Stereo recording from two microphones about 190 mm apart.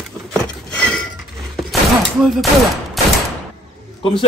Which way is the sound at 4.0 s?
30° left (ahead or behind).